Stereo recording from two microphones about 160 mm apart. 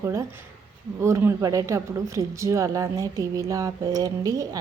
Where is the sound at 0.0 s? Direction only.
20° right (ahead or behind).